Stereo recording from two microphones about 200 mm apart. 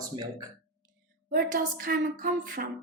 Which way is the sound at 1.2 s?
45° right (ahead or behind).